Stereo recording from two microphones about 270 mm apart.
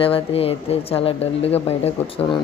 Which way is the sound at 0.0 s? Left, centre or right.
Left.